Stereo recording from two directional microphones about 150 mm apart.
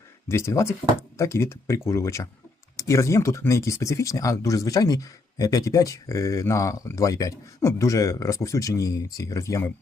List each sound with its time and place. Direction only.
0.3 s speech: 20° left (ahead or behind)